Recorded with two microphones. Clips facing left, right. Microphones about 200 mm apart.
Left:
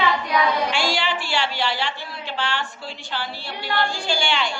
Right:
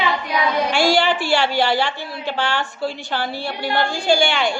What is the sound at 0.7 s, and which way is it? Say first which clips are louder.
A woman's voice: right 7 dB; 50° right (ahead or behind).